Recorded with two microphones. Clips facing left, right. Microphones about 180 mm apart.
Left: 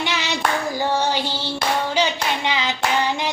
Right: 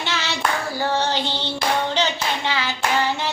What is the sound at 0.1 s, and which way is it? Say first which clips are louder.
Clapping: left 1 dB; 15° left (ahead or behind).